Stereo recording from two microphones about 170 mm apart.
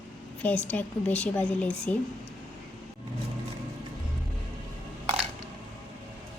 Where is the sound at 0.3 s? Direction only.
10° left (ahead or behind).